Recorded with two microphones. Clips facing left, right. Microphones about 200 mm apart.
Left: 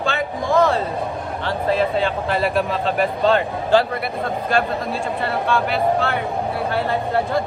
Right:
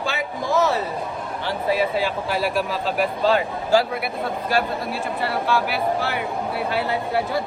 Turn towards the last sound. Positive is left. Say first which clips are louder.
# left 3 dB
turn(degrees=-5)  # may be behind; listen again after turning